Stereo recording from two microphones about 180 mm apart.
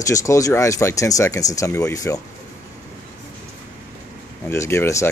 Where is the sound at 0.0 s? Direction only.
20° left (ahead or behind).